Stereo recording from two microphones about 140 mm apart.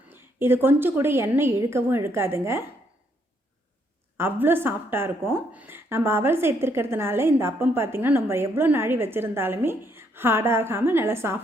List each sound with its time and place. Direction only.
0.1 s a woman's voice: 15° right (ahead or behind)
4.2 s a woman's voice: 15° right (ahead or behind)